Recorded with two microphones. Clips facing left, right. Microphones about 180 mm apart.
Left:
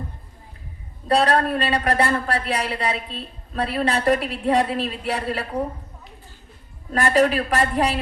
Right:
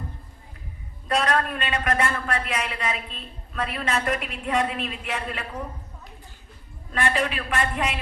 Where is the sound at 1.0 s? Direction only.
35° left (ahead or behind).